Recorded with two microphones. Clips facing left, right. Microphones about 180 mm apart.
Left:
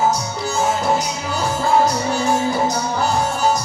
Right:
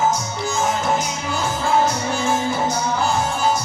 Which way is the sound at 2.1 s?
40° left (ahead or behind).